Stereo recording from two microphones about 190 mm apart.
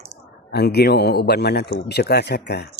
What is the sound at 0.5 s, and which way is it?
Speech, 60° left (ahead or behind).